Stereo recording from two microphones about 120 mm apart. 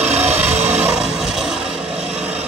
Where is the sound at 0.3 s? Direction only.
15° right (ahead or behind).